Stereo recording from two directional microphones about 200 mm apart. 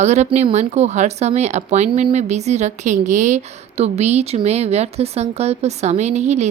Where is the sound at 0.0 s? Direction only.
35° right (ahead or behind).